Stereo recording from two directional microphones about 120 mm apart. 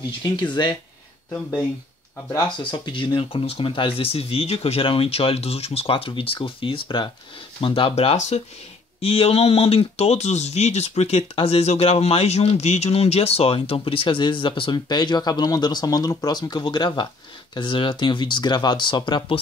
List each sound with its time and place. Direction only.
0.2 s speech: 40° left (ahead or behind)
2.7 s speech: 40° left (ahead or behind)